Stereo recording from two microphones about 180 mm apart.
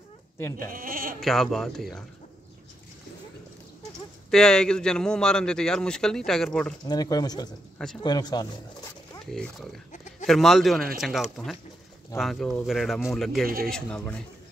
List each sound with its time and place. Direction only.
0.6 s speech: 50° right (ahead or behind)
1.2 s a man's voice: centre (ahead or behind)
4.3 s a man's voice: 5° left (ahead or behind)
6.9 s speech: 20° left (ahead or behind)
9.3 s a man's voice: centre (ahead or behind)